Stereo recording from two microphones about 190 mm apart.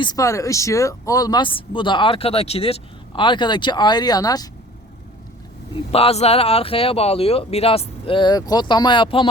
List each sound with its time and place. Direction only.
0.0 s speech: 20° left (ahead or behind)
5.7 s speech: 30° left (ahead or behind)